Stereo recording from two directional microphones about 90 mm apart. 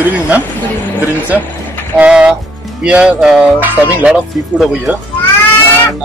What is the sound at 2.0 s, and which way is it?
Speech, 10° right (ahead or behind).